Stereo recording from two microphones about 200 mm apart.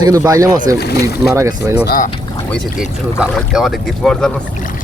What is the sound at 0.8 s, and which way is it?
Speech, 55° left (ahead or behind).